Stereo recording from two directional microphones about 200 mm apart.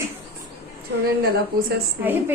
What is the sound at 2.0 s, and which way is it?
Speech, 10° right (ahead or behind).